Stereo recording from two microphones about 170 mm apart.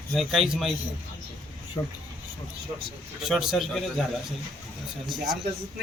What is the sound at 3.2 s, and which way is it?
Speech, centre (ahead or behind).